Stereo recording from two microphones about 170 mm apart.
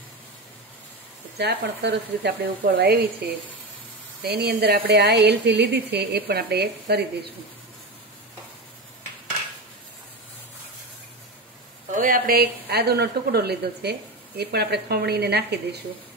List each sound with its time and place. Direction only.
1.4 s speech: 80° right
4.2 s speech: 70° right (ahead or behind)
11.9 s speech: 55° right (ahead or behind); by 15.8 s 75° right (ahead or behind)